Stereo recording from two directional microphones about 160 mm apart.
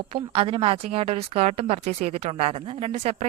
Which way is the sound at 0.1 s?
35° right (ahead or behind).